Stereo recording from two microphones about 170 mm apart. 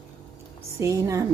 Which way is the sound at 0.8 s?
20° right (ahead or behind).